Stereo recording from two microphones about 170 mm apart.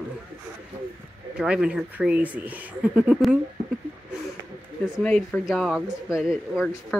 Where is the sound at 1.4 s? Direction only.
5° right (ahead or behind).